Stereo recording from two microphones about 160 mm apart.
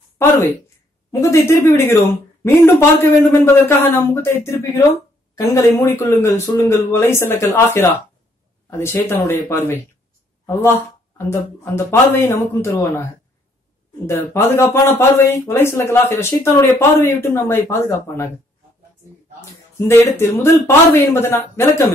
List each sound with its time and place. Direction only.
1.2 s a woman's voice: 15° left (ahead or behind)
11.1 s a woman's voice: 15° left (ahead or behind)
19.9 s a woman's voice: 15° left (ahead or behind)